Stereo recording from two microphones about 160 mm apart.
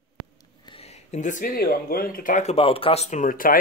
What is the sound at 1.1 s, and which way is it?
Speech, 50° left (ahead or behind).